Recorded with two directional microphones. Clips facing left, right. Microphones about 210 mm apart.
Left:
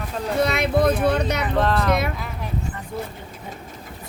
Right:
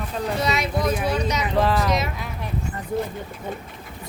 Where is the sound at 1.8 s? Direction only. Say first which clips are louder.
Left 2 dB; 60° left (ahead or behind).